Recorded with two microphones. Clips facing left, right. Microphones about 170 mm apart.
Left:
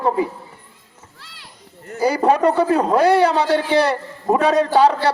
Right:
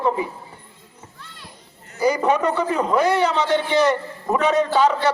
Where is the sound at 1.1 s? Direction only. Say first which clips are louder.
Right 2 dB; 80° left.